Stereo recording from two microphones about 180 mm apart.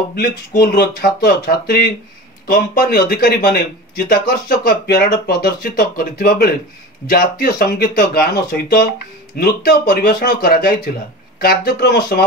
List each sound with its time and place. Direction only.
0.6 s speech: 65° left (ahead or behind)